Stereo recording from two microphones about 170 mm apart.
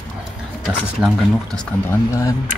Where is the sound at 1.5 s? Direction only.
15° left (ahead or behind).